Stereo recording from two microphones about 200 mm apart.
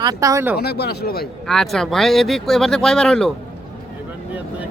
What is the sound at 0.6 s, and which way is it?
Speech, 55° left (ahead or behind).